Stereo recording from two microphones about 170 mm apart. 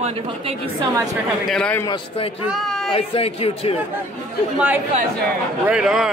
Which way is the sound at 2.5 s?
Centre (ahead or behind).